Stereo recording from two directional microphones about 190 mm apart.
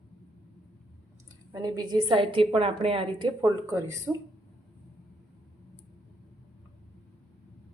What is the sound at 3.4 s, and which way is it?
Speech, 15° right (ahead or behind).